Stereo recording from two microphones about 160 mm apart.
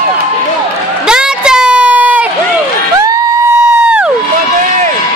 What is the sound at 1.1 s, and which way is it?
Crowd, 5° right (ahead or behind).